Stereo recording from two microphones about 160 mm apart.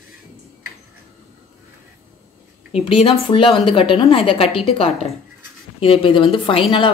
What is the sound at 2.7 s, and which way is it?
A woman's voice, 35° left (ahead or behind).